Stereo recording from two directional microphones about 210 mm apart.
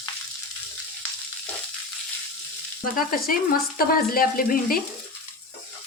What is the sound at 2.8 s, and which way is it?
Speech, 40° left (ahead or behind).